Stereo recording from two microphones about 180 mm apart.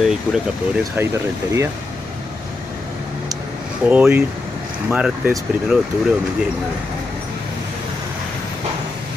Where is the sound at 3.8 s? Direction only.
10° right (ahead or behind).